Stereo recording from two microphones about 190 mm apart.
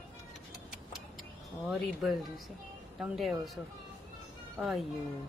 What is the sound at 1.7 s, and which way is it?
Speech, centre (ahead or behind).